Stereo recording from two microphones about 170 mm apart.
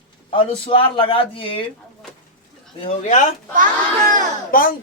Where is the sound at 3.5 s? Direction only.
50° right (ahead or behind).